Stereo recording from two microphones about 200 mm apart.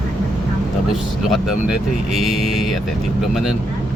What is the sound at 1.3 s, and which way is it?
Speech, centre (ahead or behind).